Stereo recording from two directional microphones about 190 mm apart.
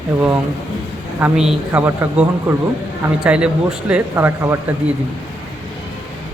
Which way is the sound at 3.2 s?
5° right (ahead or behind).